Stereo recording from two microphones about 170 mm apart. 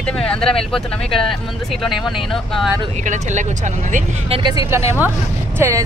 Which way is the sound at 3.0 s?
45° right (ahead or behind).